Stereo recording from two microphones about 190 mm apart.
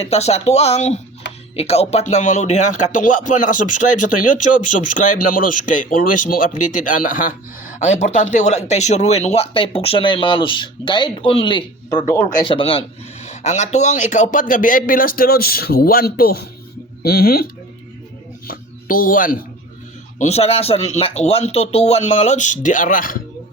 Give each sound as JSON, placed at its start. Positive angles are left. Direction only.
{"t": 0.0, "sound": "speech", "side_deg": 35}
{"t": 12.0, "sound": "speech", "side_deg": 15}
{"t": 12.5, "sound": "speech", "side_deg": 30}
{"t": 20.1, "sound": "speech", "side_deg": 35}